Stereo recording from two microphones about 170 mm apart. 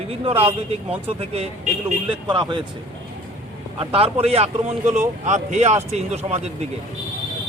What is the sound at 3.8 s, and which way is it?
Speech, 35° right (ahead or behind).